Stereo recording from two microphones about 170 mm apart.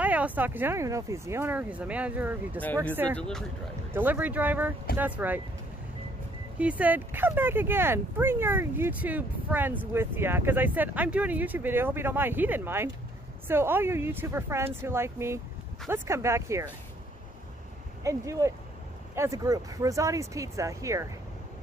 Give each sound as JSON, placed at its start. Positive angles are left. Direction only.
{"t": 0.0, "sound": "speech", "side_deg": -10}
{"t": 2.6, "sound": "speech", "side_deg": 10}
{"t": 3.9, "sound": "speech", "side_deg": -10}
{"t": 6.6, "sound": "speech", "side_deg": -10}
{"t": 18.0, "sound": "speech", "side_deg": -20}